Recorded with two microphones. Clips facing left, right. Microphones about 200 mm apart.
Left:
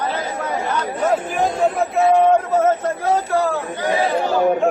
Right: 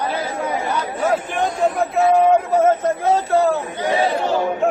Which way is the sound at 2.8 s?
25° right (ahead or behind).